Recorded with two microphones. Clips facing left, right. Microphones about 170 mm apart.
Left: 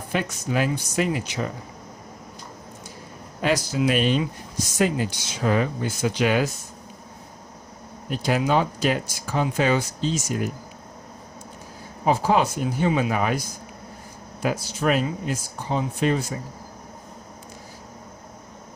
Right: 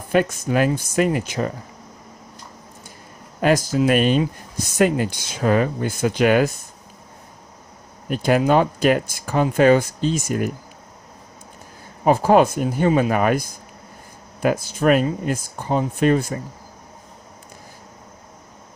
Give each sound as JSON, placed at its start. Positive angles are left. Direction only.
{"t": 0.1, "sound": "speech", "side_deg": -50}
{"t": 3.4, "sound": "speech", "side_deg": -50}
{"t": 8.1, "sound": "speech", "side_deg": -55}
{"t": 12.0, "sound": "speech", "side_deg": -50}
{"t": 14.4, "sound": "speech", "side_deg": -55}